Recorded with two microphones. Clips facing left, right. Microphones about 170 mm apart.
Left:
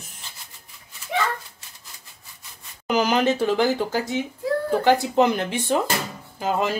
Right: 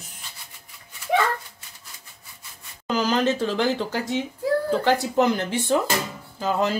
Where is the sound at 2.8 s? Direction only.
15° left (ahead or behind).